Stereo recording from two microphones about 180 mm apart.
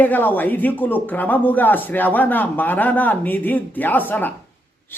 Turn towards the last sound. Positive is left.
turn(degrees=10)  # may be behind; listen again after turning